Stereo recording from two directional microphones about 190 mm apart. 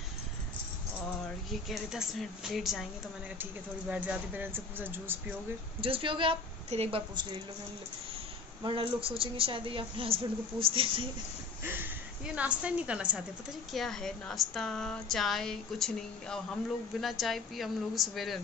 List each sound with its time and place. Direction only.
1.5 s speech: centre (ahead or behind)
3.9 s speech: 5° right (ahead or behind)
5.8 s a woman's voice: 30° right (ahead or behind)
8.6 s a woman's voice: 30° right (ahead or behind)
11.6 s a woman's voice: 10° right (ahead or behind)